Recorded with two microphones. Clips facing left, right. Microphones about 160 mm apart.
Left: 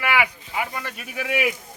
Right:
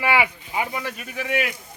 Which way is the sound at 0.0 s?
25° right (ahead or behind).